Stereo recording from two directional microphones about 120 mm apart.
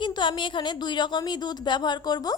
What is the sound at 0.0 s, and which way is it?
Speech, 40° left (ahead or behind).